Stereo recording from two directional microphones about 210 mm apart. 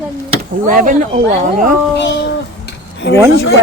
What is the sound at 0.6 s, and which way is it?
Speech, 40° right (ahead or behind).